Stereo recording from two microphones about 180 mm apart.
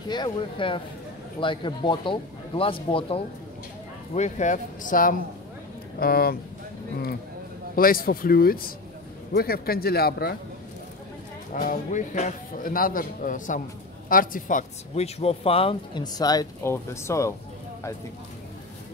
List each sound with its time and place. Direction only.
0.1 s speech: 25° left (ahead or behind)
4.1 s a man's voice: 40° left (ahead or behind); by 6.3 s 60° left (ahead or behind)
7.7 s a man's voice: 55° left (ahead or behind)
11.5 s a man's voice: 45° left (ahead or behind); by 17.3 s 15° left (ahead or behind)